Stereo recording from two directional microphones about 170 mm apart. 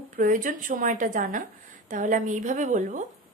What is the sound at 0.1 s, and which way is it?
A woman's voice, 50° right (ahead or behind).